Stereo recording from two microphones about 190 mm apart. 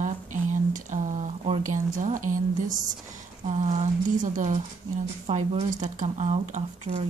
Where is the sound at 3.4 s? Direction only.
40° right (ahead or behind).